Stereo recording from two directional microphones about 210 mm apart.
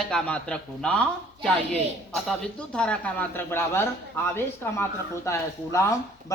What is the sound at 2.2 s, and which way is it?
A man's voice, 5° left (ahead or behind).